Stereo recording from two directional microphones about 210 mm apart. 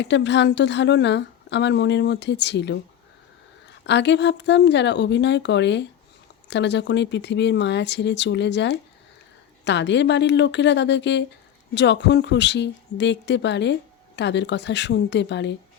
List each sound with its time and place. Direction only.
0.0 s a woman's voice: 55° left (ahead or behind)
3.8 s a woman's voice: 55° left (ahead or behind)